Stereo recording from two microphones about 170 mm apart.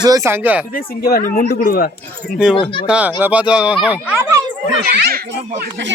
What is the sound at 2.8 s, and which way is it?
Speech, 5° right (ahead or behind).